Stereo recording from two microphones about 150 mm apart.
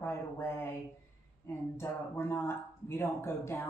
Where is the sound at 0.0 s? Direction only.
15° left (ahead or behind).